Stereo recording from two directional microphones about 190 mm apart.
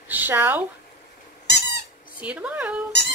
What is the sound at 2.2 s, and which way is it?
Speech, 5° right (ahead or behind).